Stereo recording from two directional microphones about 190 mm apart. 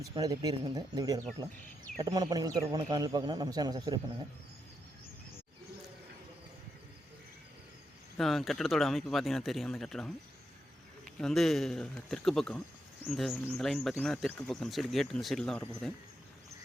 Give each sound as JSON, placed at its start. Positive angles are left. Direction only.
{"t": 0.1, "sound": "a man's voice", "side_deg": -20}
{"t": 8.2, "sound": "speech", "side_deg": 0}
{"t": 11.2, "sound": "speech", "side_deg": 0}